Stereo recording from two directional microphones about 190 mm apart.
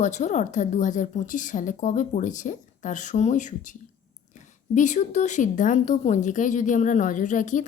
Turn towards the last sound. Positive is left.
turn(degrees=40)  # may be behind; listen again after turning